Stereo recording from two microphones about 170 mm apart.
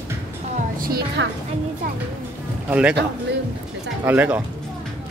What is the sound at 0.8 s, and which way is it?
Speech, 65° right (ahead or behind).